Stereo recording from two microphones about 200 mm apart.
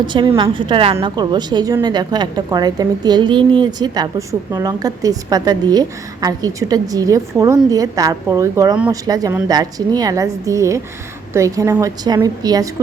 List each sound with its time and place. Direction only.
0.0 s a woman's voice: 25° right (ahead or behind)